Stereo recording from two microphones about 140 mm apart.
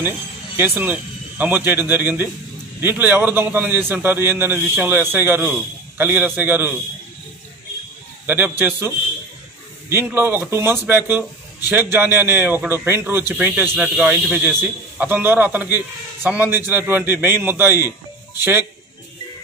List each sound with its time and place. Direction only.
0.6 s a man's voice: 15° right (ahead or behind)
8.3 s a man's voice: 15° right (ahead or behind)
17.7 s music: 25° left (ahead or behind)
18.4 s a man's voice: 15° right (ahead or behind)